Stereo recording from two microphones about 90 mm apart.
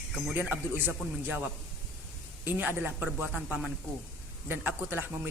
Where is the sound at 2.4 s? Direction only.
20° right (ahead or behind).